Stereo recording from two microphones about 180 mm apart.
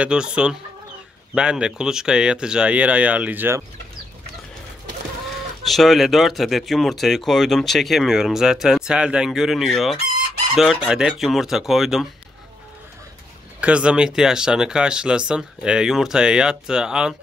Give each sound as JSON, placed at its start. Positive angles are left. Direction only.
{"t": 0.0, "sound": "speech", "side_deg": -5}
{"t": 5.7, "sound": "speech", "side_deg": 0}
{"t": 13.6, "sound": "speech", "side_deg": -5}